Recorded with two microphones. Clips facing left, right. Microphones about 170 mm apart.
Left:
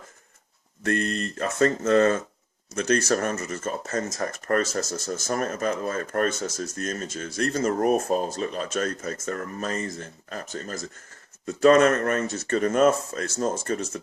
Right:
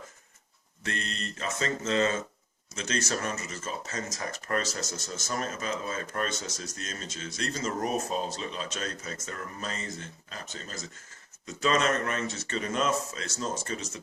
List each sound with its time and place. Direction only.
0.9 s speech: 50° left (ahead or behind)